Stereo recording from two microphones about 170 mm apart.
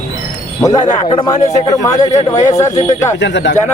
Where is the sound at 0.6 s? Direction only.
25° left (ahead or behind).